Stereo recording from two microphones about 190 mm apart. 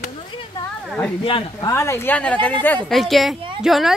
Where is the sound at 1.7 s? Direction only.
15° left (ahead or behind).